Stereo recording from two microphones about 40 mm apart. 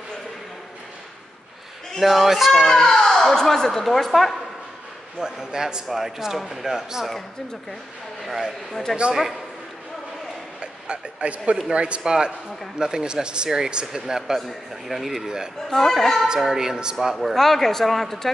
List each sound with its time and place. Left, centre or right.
2.0 s speech: centre
2.5 s a child's voice: centre
5.2 s speech: centre
8.3 s speech: centre
10.6 s a man's voice: right; by 15.2 s centre
15.2 s speech: centre
15.7 s speech: centre
16.3 s speech: centre
17.2 s speech: centre